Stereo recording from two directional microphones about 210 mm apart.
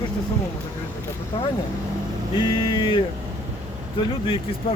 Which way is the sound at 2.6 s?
25° left (ahead or behind).